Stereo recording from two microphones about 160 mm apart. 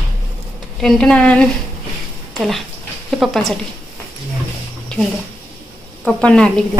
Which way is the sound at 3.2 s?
Centre (ahead or behind).